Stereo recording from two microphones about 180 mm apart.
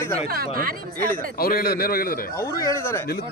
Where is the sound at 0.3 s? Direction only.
55° right (ahead or behind).